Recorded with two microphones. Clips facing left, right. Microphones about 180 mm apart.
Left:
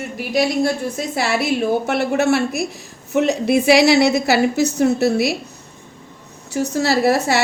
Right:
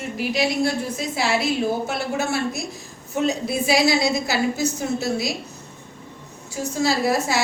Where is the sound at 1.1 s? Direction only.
60° left (ahead or behind).